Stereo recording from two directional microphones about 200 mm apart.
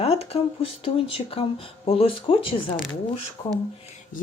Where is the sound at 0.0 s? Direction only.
30° left (ahead or behind).